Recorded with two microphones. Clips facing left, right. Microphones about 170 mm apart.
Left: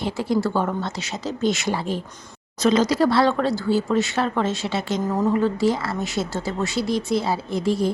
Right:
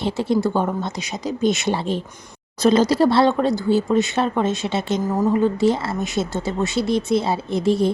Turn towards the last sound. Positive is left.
turn(degrees=-20)  # may be behind; listen again after turning